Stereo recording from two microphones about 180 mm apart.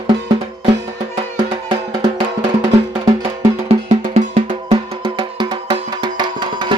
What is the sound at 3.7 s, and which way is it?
Drum, 40° right (ahead or behind).